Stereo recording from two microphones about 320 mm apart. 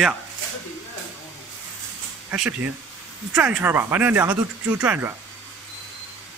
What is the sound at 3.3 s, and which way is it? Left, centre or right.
Speech, centre.